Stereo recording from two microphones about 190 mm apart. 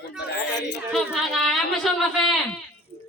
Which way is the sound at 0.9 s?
Centre (ahead or behind).